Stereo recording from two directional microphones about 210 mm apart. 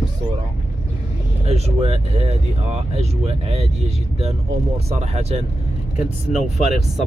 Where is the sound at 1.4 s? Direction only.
30° right (ahead or behind).